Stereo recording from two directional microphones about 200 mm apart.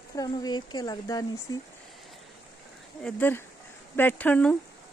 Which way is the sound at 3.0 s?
5° left (ahead or behind).